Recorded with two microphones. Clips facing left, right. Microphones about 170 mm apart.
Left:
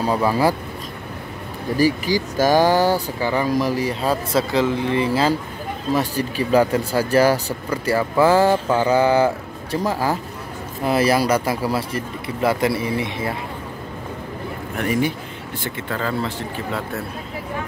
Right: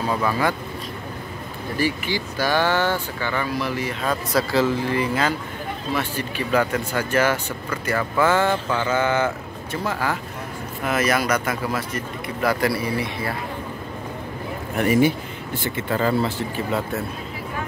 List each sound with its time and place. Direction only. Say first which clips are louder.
0.0 s speech: left 4 dB; 30° left (ahead or behind)
1.8 s speech: left 6 dB; 40° left (ahead or behind); by 13.3 s 20° left (ahead or behind)
14.8 s speech: right 3 dB; 5° right (ahead or behind)